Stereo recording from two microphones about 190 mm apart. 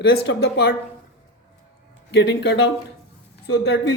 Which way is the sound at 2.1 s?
65° left (ahead or behind).